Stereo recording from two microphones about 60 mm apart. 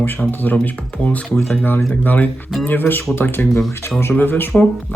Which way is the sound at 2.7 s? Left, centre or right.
Left.